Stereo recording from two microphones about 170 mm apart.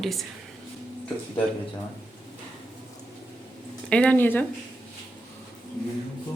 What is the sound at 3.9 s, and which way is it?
Speech, 10° left (ahead or behind).